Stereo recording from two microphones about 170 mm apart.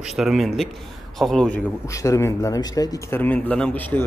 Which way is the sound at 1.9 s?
20° left (ahead or behind).